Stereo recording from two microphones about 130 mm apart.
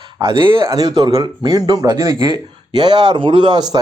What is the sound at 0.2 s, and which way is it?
Speech, 40° right (ahead or behind).